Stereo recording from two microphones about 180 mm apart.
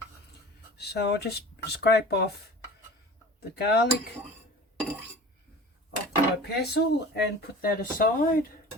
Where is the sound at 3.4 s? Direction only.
65° left (ahead or behind).